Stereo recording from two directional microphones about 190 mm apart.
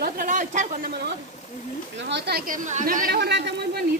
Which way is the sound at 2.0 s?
60° right (ahead or behind).